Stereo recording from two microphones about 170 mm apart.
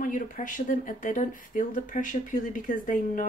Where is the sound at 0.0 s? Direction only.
50° left (ahead or behind).